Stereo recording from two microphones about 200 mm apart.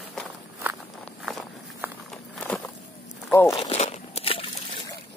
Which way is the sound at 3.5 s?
35° left (ahead or behind).